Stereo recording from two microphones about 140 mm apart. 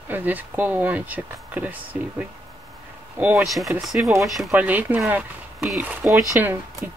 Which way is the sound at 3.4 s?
Centre (ahead or behind).